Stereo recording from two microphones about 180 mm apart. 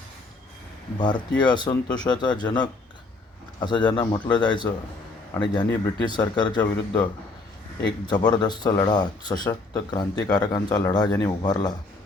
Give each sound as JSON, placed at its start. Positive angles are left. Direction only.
{"t": 0.9, "sound": "speech", "side_deg": 25}
{"t": 5.6, "sound": "speech", "side_deg": 15}
{"t": 8.0, "sound": "speech", "side_deg": 25}